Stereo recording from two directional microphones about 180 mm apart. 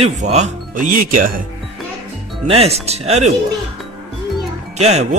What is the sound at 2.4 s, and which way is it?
Speech, 35° right (ahead or behind).